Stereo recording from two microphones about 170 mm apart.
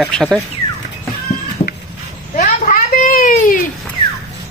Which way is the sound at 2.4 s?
50° left (ahead or behind).